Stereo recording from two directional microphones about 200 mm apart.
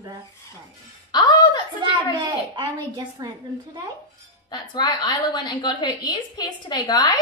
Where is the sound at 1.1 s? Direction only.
20° left (ahead or behind).